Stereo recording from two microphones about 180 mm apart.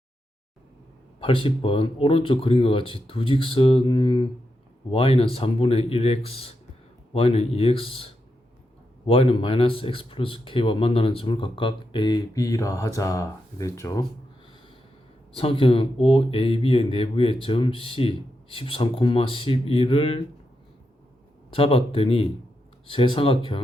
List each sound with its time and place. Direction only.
1.2 s speech: 30° left (ahead or behind)
15.4 s speech: 30° left (ahead or behind)
21.5 s speech: 30° left (ahead or behind)